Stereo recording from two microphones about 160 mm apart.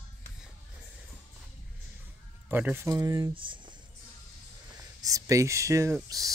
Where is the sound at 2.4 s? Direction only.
10° right (ahead or behind); by 3.7 s 30° right (ahead or behind).